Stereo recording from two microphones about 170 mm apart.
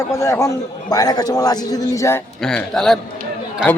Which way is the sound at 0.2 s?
15° left (ahead or behind).